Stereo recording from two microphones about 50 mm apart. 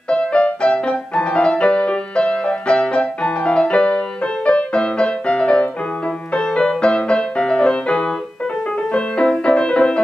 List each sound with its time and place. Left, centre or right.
0.1 s music: left